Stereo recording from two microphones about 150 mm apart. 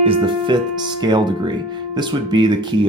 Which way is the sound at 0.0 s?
35° right (ahead or behind).